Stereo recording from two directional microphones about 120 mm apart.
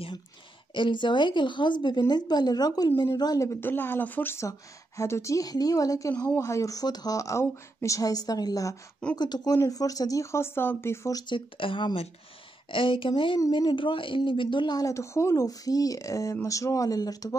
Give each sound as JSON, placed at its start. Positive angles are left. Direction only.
{"t": 0.7, "sound": "speech", "side_deg": 40}
{"t": 11.2, "sound": "speech", "side_deg": 45}